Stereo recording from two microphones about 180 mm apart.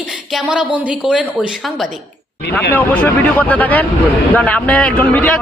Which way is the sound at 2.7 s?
10° left (ahead or behind).